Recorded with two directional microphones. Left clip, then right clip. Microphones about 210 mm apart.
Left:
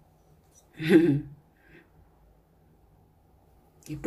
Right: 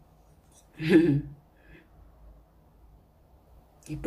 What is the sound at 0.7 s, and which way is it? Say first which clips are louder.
Speech: left 1 dB; 15° left (ahead or behind).